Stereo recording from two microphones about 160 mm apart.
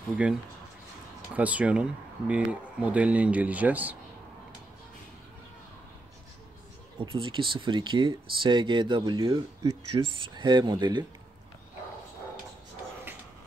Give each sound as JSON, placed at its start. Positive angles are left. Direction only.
{"t": 0.1, "sound": "speech", "side_deg": -5}
{"t": 7.0, "sound": "speech", "side_deg": -30}